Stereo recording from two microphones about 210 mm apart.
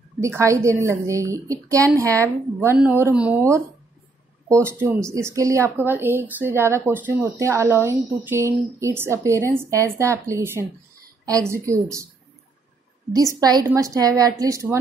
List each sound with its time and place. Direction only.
0.2 s speech: 15° right (ahead or behind)
4.6 s speech: 15° right (ahead or behind)
13.1 s speech: 15° right (ahead or behind)